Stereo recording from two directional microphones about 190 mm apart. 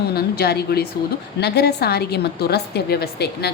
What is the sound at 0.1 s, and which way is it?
A woman's voice, 55° left (ahead or behind).